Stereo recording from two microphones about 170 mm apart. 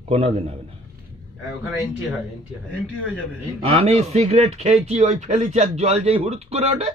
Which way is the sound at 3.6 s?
40° right (ahead or behind).